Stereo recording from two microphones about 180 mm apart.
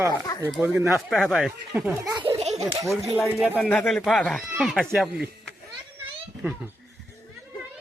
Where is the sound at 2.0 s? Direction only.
20° right (ahead or behind).